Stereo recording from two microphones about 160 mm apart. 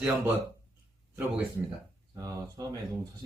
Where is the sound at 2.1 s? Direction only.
25° right (ahead or behind).